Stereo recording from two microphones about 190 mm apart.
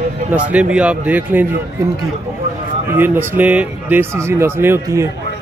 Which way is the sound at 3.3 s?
10° right (ahead or behind).